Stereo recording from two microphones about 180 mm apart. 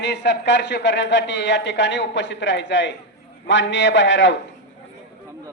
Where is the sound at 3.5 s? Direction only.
90° left.